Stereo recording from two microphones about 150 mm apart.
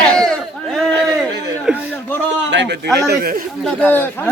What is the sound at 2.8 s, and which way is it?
Speech, 90° right.